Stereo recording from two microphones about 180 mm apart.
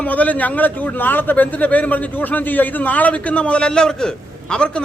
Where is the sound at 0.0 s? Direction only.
10° left (ahead or behind).